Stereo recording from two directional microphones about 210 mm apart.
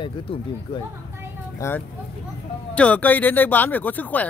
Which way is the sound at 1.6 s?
10° left (ahead or behind).